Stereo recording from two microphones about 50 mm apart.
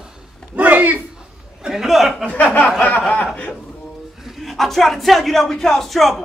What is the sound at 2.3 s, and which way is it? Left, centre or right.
Speech, left.